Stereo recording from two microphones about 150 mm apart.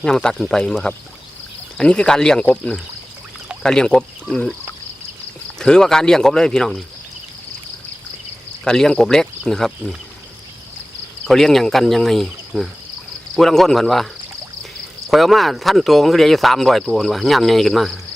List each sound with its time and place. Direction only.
0.0 s speech: 5° left (ahead or behind)
5.5 s speech: 5° left (ahead or behind)
8.6 s speech: 5° left (ahead or behind)
11.3 s speech: centre (ahead or behind)
15.1 s speech: centre (ahead or behind)